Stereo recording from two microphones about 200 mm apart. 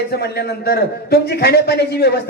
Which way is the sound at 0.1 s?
50° left (ahead or behind).